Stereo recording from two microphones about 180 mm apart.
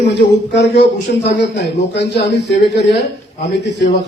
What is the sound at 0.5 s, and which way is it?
A man's voice, 75° left (ahead or behind).